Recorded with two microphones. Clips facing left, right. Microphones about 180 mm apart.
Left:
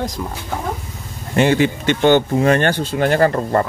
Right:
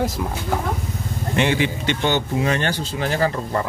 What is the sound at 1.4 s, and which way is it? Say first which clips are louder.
Speech: left 6 dB; 45° left (ahead or behind).